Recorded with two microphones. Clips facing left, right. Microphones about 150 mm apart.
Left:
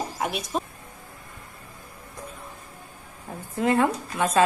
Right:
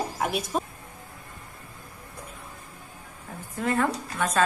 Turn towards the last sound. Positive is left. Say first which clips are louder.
# left 2 dB
turn(degrees=25)  # may be behind; listen again after turning